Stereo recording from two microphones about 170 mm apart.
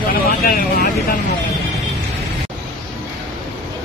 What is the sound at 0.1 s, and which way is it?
Vehicle, 55° left (ahead or behind).